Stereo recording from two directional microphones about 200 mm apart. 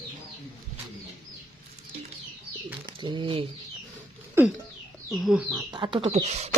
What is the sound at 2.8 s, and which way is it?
Speech, 25° right (ahead or behind).